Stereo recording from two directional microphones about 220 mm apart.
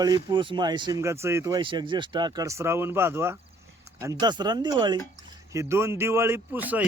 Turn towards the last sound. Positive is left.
turn(degrees=-10)  # may be behind; listen again after turning